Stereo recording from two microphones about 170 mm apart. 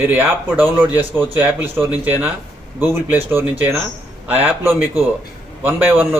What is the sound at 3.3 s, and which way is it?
A man's voice, 15° right (ahead or behind).